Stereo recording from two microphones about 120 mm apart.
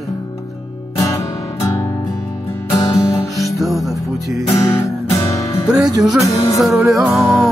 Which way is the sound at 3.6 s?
Centre (ahead or behind).